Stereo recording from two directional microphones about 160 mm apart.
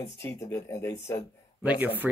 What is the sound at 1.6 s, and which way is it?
Speech, 10° right (ahead or behind).